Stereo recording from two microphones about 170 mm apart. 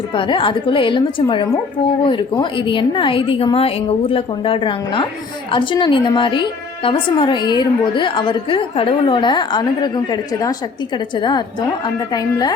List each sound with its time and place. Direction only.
0.1 s a woman's voice: 30° left (ahead or behind)